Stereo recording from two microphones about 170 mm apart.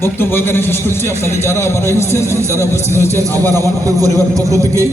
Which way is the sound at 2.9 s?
15° left (ahead or behind).